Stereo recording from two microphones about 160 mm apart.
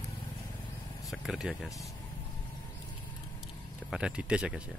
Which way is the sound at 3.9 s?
5° right (ahead or behind).